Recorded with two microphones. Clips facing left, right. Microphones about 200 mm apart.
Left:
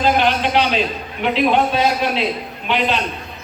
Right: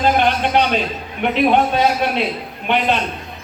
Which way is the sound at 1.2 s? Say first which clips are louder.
Right 1 dB; 55° right (ahead or behind).